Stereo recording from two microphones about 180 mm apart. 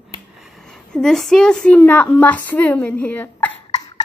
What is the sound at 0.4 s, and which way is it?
A woman's voice, 5° left (ahead or behind).